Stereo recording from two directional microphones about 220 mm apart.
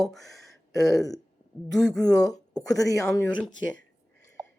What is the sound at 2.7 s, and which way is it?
Speech, 15° left (ahead or behind).